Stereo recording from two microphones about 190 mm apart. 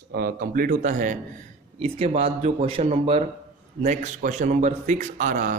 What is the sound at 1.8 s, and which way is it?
A man's voice, 30° right (ahead or behind).